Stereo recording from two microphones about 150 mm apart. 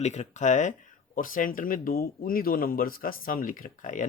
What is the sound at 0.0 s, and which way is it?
Speech, 50° left (ahead or behind).